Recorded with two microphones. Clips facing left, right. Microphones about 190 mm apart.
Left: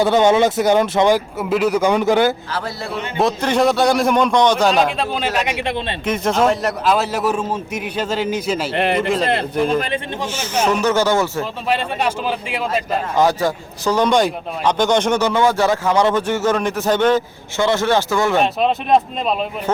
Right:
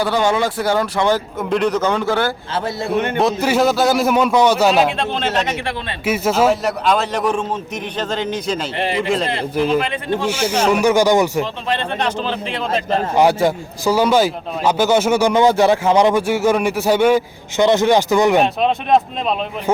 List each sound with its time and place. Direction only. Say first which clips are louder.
0.0 s a man's voice: left 4 dB; 20° left (ahead or behind)
2.5 s a man's voice: right 3 dB; 20° right (ahead or behind)
3.2 s a man's voice: left 2 dB; 5° right (ahead or behind); by 5.8 s 20° left (ahead or behind)
6.1 s a man's voice: right 2 dB; 5° right (ahead or behind)
8.7 s speech: left 4 dB; 55° left (ahead or behind)
10.2 s a man's voice: right 2 dB; 10° right (ahead or behind)
11.7 s a man's voice: left 3 dB; 10° left (ahead or behind)
13.1 s a man's voice: right 2 dB; 15° right (ahead or behind)
18.3 s a man's voice: right 1 dB; centre (ahead or behind)